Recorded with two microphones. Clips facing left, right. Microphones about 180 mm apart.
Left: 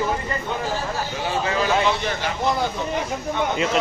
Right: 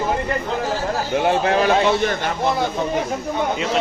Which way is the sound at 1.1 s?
60° right (ahead or behind).